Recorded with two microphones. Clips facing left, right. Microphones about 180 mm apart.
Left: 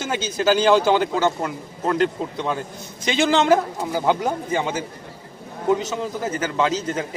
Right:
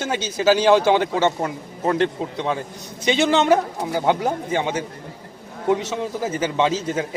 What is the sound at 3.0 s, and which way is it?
Speech, centre (ahead or behind).